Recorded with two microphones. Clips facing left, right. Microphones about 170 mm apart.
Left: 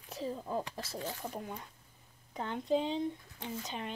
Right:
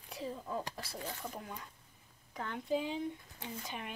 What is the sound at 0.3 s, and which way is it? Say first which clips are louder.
Speech: left 3 dB; 25° left (ahead or behind).